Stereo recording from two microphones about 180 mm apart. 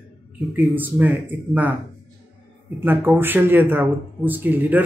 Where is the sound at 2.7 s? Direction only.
10° right (ahead or behind).